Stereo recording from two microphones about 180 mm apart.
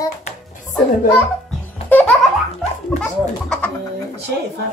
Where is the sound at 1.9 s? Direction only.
10° left (ahead or behind).